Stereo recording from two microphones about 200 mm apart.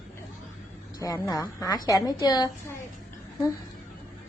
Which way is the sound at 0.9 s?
15° left (ahead or behind).